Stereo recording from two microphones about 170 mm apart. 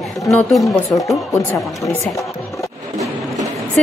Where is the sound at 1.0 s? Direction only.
20° left (ahead or behind).